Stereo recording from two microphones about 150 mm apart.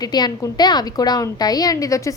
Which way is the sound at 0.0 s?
25° left (ahead or behind).